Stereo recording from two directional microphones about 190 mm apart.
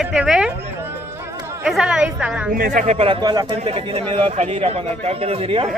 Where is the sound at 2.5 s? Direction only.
45° right (ahead or behind).